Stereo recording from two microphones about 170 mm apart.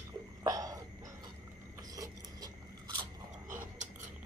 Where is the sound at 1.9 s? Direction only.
20° right (ahead or behind).